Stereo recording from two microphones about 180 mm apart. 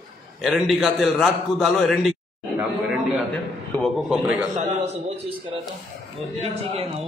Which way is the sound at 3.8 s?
Centre (ahead or behind).